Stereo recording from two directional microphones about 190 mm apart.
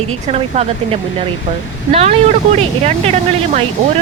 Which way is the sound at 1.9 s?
30° right (ahead or behind).